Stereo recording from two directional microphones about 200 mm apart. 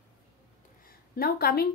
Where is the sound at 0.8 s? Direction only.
50° left (ahead or behind).